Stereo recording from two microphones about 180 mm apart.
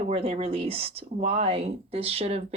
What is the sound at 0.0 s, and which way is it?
A woman's voice, 30° right (ahead or behind).